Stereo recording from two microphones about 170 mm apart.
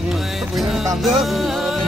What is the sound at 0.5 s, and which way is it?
Music, centre (ahead or behind).